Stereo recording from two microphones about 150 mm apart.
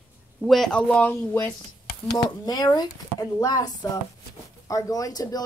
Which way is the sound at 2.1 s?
25° left (ahead or behind).